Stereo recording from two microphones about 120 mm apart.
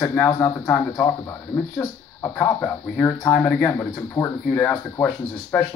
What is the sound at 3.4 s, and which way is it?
Speech, 10° left (ahead or behind).